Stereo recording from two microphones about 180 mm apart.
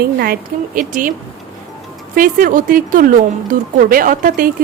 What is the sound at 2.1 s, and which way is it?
A woman's voice, 50° right (ahead or behind).